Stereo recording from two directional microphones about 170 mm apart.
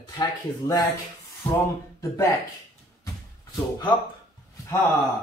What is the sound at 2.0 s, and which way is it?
Speech, 20° left (ahead or behind).